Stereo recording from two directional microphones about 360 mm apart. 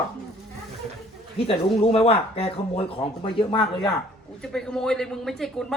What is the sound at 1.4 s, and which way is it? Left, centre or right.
Speech, centre.